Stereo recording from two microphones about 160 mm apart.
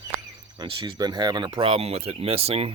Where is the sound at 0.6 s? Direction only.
30° right (ahead or behind).